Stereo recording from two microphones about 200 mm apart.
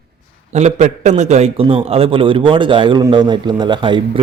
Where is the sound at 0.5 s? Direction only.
35° right (ahead or behind).